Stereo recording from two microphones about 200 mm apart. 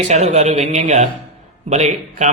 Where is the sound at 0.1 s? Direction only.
35° right (ahead or behind).